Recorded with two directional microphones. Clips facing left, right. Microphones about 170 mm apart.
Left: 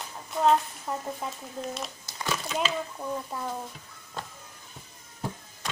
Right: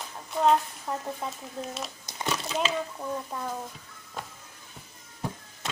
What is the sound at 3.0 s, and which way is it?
Speech, 5° left (ahead or behind).